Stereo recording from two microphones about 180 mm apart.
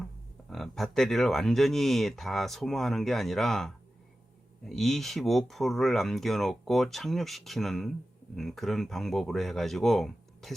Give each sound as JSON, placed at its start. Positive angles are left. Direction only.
{"t": 0.5, "sound": "speech", "side_deg": 0}